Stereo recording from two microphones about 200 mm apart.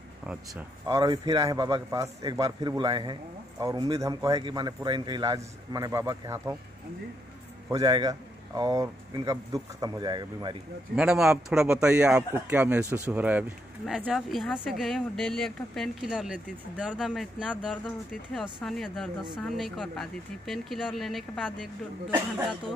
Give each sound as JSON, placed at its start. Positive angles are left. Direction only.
{"t": 0.8, "sound": "a man's voice", "side_deg": -20}
{"t": 7.7, "sound": "a man's voice", "side_deg": -20}
{"t": 11.0, "sound": "speech", "side_deg": -5}